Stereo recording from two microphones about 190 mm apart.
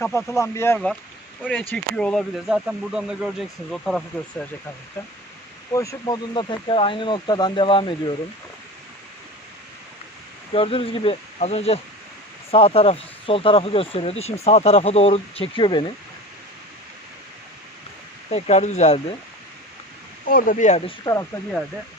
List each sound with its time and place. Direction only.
0.0 s speech: 15° left (ahead or behind)
5.7 s speech: 15° left (ahead or behind)
10.5 s speech: 30° left (ahead or behind)
18.3 s speech: 35° left (ahead or behind)
20.2 s speech: 45° left (ahead or behind)
21.0 s speech: 15° left (ahead or behind)